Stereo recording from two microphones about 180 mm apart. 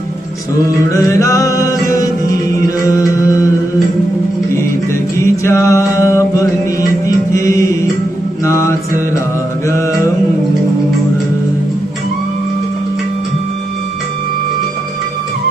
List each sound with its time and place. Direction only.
0.9 s music: 15° left (ahead or behind)
5.2 s mantra: 15° left (ahead or behind)